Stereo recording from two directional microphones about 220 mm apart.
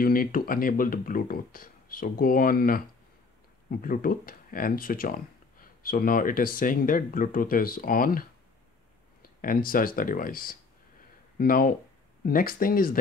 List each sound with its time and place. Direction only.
0.0 s speech: 40° left (ahead or behind)
3.8 s speech: 40° left (ahead or behind)
9.4 s speech: 40° left (ahead or behind)